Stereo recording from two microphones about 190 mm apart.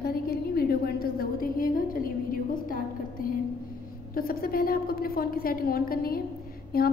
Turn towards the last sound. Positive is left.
turn(degrees=55)  # may be behind; listen again after turning